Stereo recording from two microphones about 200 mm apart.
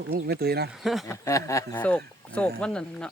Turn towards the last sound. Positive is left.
turn(degrees=5)  # may be behind; listen again after turning